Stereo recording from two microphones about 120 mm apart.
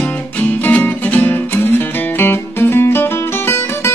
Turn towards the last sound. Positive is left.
turn(degrees=20)  # may be behind; listen again after turning